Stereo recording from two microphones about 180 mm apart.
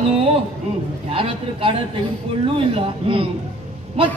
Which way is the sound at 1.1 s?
30° right (ahead or behind).